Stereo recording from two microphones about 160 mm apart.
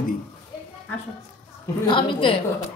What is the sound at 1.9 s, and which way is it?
Speech, 30° left (ahead or behind).